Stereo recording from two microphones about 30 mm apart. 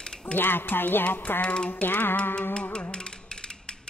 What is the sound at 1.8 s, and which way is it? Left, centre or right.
Speech, left.